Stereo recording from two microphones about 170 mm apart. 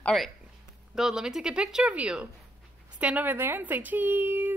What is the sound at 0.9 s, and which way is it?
A woman's voice, 5° right (ahead or behind).